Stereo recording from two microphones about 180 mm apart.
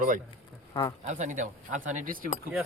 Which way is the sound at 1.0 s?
40° right (ahead or behind).